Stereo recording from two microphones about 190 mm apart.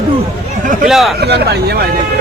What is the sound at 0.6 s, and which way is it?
Speech, 40° right (ahead or behind).